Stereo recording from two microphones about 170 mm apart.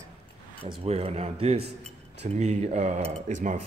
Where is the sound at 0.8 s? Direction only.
35° right (ahead or behind).